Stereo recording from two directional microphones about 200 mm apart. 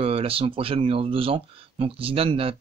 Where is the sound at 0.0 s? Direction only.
30° right (ahead or behind).